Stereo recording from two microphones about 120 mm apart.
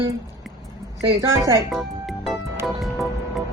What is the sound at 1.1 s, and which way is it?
Speech, 20° right (ahead or behind).